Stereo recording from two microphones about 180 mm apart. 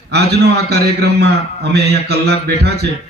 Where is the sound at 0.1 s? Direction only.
65° right (ahead or behind).